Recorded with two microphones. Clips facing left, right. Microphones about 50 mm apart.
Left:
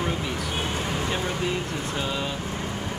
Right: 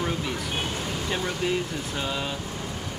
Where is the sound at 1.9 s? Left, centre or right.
Centre.